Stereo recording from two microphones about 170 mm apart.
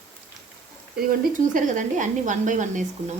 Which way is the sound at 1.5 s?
50° right (ahead or behind).